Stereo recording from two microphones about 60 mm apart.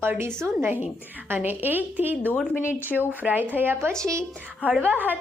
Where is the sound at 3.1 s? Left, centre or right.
Right.